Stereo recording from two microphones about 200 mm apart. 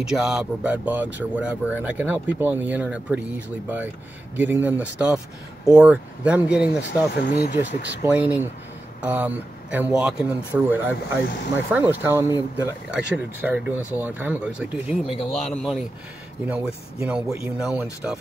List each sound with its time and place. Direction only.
0.0 s speech: 5° right (ahead or behind)
7.2 s speech: 50° left (ahead or behind)
8.0 s speech: 10° right (ahead or behind)